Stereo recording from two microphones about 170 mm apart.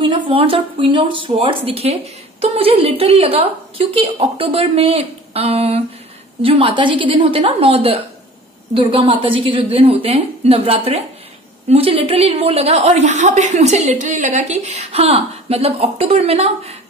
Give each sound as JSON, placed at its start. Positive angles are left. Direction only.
{"t": 0.3, "sound": "a woman's voice", "side_deg": -30}